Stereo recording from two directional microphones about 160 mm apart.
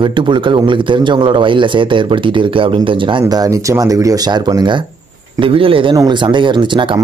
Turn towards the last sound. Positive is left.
turn(degrees=-30)  # may be behind; listen again after turning